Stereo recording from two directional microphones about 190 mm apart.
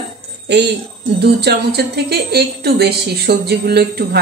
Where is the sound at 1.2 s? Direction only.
60° right (ahead or behind).